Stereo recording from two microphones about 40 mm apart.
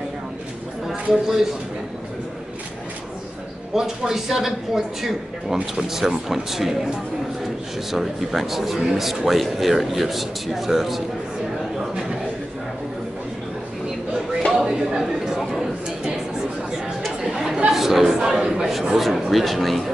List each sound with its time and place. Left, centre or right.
0.8 s a sound: centre
3.7 s speech: centre
7.9 s a man's voice: centre
14.5 s a sound: centre
15.3 s chatter: centre
17.2 s chatter: centre
17.6 s a man's voice: centre